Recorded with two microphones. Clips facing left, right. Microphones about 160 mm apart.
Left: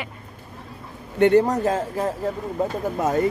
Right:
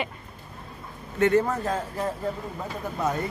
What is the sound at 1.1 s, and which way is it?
Speech, 65° left (ahead or behind).